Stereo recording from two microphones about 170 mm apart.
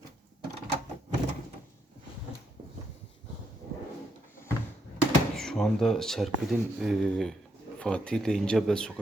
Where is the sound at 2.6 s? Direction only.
50° right (ahead or behind).